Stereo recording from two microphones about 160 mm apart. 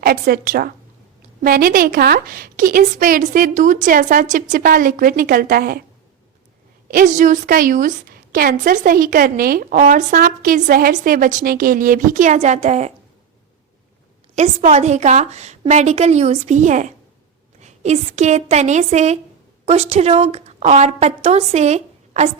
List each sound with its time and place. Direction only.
0.0 s a woman's voice: 70° right (ahead or behind)
6.8 s a woman's voice: 55° right (ahead or behind)
14.3 s a woman's voice: 45° right (ahead or behind)